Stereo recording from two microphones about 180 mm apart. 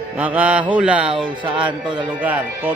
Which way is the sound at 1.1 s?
30° right (ahead or behind).